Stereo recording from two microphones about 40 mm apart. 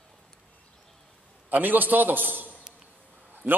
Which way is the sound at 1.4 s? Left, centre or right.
Right.